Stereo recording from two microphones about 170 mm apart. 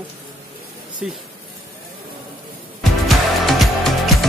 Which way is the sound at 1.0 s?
5° right (ahead or behind).